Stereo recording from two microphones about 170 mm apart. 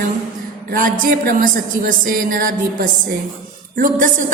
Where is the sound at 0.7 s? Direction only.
55° right (ahead or behind).